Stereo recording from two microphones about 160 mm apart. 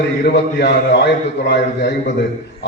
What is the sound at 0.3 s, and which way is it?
A man's voice, 90° left.